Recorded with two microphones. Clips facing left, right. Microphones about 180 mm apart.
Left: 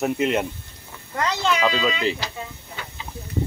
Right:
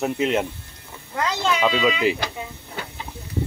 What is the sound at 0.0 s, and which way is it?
Speech, centre (ahead or behind).